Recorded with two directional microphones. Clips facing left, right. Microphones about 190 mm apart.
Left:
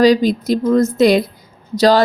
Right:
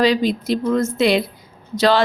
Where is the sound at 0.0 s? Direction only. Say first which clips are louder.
Left 5 dB; 40° left (ahead or behind).